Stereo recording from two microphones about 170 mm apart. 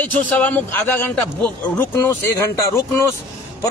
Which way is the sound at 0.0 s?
10° left (ahead or behind).